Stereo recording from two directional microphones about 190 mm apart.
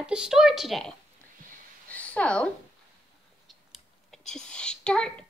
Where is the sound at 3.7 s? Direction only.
Centre (ahead or behind).